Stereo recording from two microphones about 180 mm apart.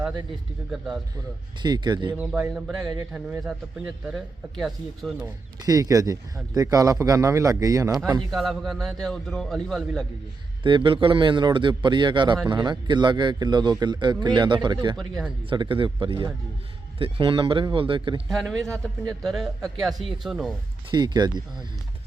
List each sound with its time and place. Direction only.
0.7 s speech: 5° right (ahead or behind)
1.6 s speech: 25° right (ahead or behind)
2.1 s speech: 5° right (ahead or behind)
5.2 s speech: 20° right (ahead or behind)
8.3 s speech: centre (ahead or behind)
10.6 s speech: 25° right (ahead or behind)
14.9 s speech: centre (ahead or behind)
15.4 s speech: 25° right (ahead or behind)
18.3 s speech: centre (ahead or behind)
20.9 s speech: 25° right (ahead or behind)